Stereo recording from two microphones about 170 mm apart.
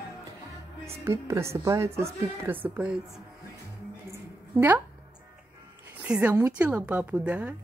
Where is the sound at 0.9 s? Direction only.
15° right (ahead or behind).